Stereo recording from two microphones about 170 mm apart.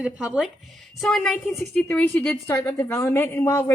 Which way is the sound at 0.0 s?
5° right (ahead or behind).